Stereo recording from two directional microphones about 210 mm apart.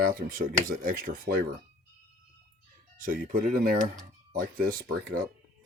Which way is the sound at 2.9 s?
40° right (ahead or behind).